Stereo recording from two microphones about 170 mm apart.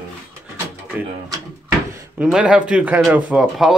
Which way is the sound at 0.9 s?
10° right (ahead or behind).